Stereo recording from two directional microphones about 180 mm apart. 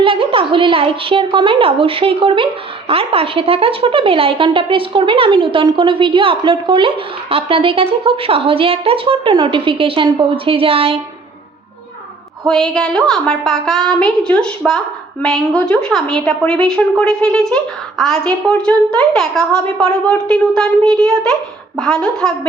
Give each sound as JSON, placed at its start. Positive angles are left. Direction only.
{"t": 0.0, "sound": "speech", "side_deg": -30}
{"t": 12.7, "sound": "a woman's voice", "side_deg": 5}